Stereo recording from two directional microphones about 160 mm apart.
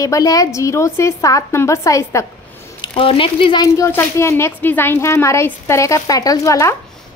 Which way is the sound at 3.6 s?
20° left (ahead or behind).